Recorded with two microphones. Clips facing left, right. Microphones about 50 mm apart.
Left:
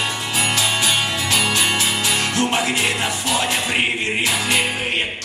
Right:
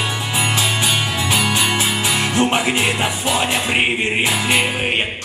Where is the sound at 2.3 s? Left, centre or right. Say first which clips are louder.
Right 3 dB; right.